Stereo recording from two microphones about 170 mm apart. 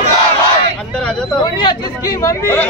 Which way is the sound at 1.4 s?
25° left (ahead or behind).